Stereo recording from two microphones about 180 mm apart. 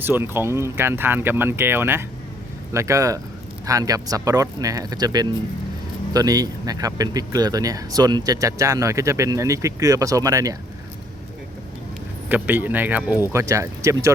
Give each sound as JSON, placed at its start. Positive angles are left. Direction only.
{"t": 0.0, "sound": "speech", "side_deg": -10}
{"t": 12.3, "sound": "speech", "side_deg": -10}